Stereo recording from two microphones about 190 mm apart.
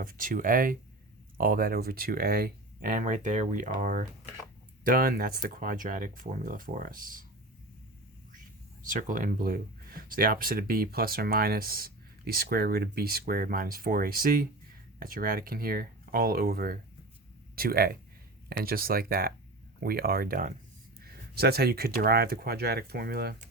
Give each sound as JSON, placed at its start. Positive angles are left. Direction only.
{"t": 0.0, "sound": "speech", "side_deg": -45}
{"t": 8.8, "sound": "speech", "side_deg": -45}